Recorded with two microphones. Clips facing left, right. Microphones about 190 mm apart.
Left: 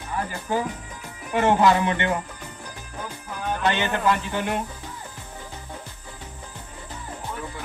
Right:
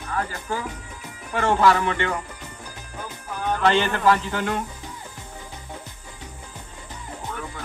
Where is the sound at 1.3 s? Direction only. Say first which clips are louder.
Left 1 dB; 20° left (ahead or behind).